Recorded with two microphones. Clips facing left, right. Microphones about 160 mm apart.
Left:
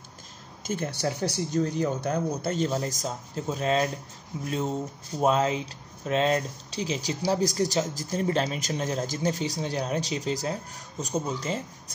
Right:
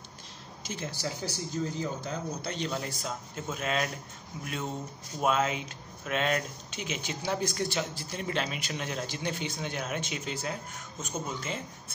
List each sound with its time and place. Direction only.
0.7 s speech: 55° left (ahead or behind)
2.5 s speech: 40° left (ahead or behind)
5.2 s speech: 35° left (ahead or behind)